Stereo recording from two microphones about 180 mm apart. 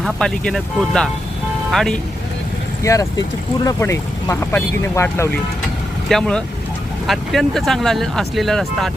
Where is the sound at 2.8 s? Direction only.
15° left (ahead or behind).